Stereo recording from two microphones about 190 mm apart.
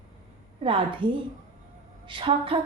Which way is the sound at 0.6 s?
25° right (ahead or behind).